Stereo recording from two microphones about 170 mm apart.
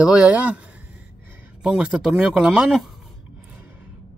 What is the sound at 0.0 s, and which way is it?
Speech, 5° right (ahead or behind).